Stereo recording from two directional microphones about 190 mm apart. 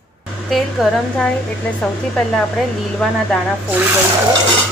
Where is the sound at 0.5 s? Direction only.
5° left (ahead or behind).